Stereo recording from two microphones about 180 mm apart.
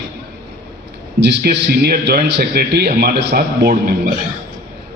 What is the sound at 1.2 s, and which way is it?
A man's voice, 70° right (ahead or behind).